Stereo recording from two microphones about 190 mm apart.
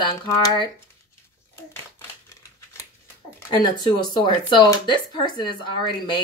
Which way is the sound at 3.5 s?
25° left (ahead or behind).